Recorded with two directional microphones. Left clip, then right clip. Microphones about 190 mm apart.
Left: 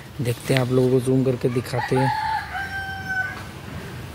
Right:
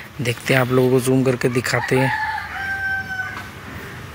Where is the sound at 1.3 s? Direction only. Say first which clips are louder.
Right 5 dB; 5° right (ahead or behind).